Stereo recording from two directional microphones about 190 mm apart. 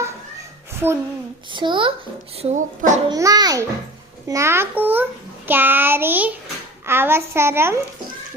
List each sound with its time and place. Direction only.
0.7 s a sound: 10° right (ahead or behind)
1.5 s a child's voice: 25° right (ahead or behind)
2.4 s speech: 40° right (ahead or behind)
3.1 s a child's voice: 20° right (ahead or behind)